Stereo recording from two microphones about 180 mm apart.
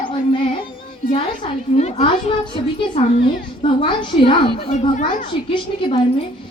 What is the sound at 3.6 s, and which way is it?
A child's voice, 30° left (ahead or behind).